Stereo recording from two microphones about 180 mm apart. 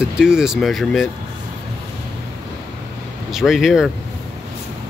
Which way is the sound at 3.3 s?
Centre (ahead or behind).